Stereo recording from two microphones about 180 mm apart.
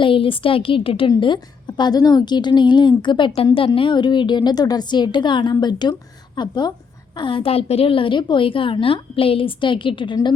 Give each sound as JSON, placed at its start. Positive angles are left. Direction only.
{"t": 0.0, "sound": "a woman's voice", "side_deg": 30}